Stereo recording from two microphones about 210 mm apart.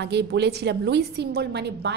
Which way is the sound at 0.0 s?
55° right (ahead or behind).